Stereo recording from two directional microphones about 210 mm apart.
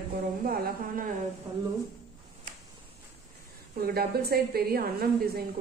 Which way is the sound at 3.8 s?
45° right (ahead or behind).